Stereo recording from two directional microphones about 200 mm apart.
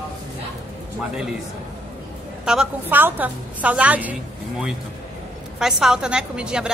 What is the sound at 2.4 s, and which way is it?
A woman's voice, 5° right (ahead or behind).